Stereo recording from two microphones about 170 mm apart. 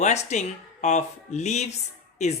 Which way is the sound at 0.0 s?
40° left (ahead or behind).